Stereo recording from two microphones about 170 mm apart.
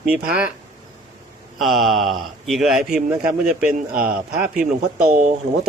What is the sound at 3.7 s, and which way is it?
Speech, 55° right (ahead or behind).